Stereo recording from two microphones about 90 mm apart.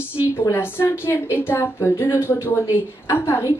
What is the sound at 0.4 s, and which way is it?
Speech, 25° left (ahead or behind).